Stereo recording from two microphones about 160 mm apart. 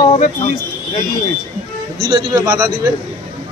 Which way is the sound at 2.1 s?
25° right (ahead or behind).